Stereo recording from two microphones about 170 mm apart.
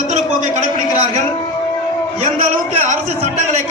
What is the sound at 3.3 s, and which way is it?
Speech, 45° right (ahead or behind).